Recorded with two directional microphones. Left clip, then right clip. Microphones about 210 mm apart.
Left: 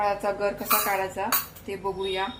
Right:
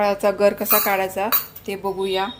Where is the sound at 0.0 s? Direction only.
55° right (ahead or behind).